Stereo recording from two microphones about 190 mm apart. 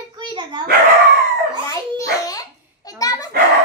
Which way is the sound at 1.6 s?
15° left (ahead or behind).